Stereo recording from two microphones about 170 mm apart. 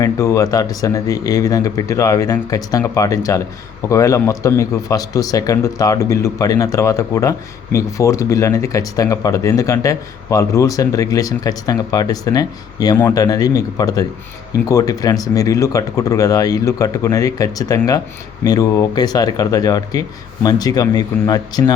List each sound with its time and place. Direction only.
0.0 s speech: 15° left (ahead or behind)